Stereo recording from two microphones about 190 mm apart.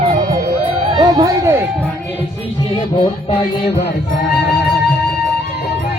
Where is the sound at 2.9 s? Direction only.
25° left (ahead or behind).